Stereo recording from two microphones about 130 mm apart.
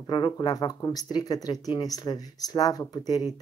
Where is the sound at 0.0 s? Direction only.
35° left (ahead or behind).